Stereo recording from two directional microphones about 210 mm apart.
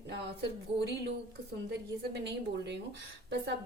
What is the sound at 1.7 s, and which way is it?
A woman's voice, 55° right (ahead or behind).